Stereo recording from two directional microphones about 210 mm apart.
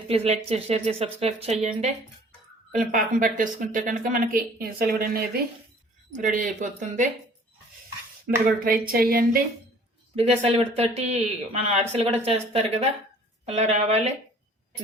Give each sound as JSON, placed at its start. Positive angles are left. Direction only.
{"t": 0.1, "sound": "speech", "side_deg": -30}
{"t": 8.3, "sound": "speech", "side_deg": -45}
{"t": 10.2, "sound": "speech", "side_deg": -30}